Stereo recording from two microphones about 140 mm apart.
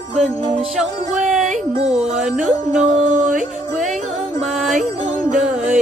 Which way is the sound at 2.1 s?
55° right (ahead or behind).